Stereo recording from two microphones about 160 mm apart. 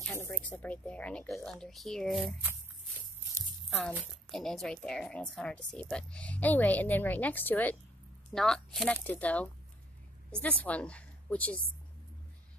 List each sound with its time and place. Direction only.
0.0 s speech: 15° left (ahead or behind)
4.3 s a woman's voice: centre (ahead or behind)